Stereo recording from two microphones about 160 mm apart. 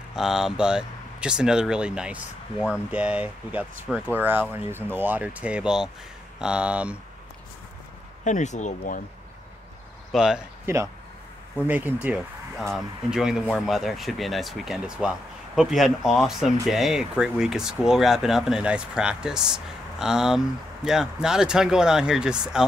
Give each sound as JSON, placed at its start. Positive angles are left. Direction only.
{"t": 0.1, "sound": "speech", "side_deg": -5}
{"t": 8.2, "sound": "speech", "side_deg": 50}
{"t": 10.1, "sound": "speech", "side_deg": -5}